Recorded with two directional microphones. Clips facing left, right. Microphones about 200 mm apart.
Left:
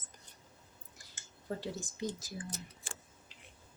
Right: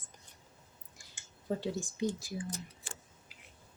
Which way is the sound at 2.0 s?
15° right (ahead or behind).